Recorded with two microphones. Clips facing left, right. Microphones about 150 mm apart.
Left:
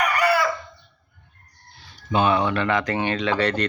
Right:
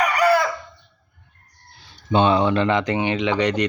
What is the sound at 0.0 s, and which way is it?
Chicken, 40° right (ahead or behind).